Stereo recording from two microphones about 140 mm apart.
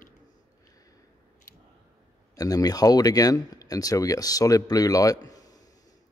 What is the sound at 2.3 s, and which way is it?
Speech, 25° left (ahead or behind).